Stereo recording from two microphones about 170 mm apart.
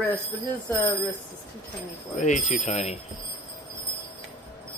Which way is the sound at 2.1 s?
45° left (ahead or behind).